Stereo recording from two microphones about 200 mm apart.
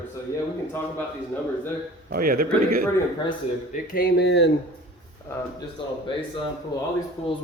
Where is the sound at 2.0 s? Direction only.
45° right (ahead or behind).